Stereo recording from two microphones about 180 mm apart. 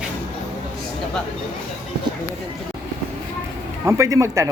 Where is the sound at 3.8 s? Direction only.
15° right (ahead or behind).